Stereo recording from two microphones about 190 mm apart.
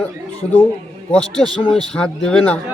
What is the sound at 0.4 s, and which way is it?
Speech, 5° right (ahead or behind).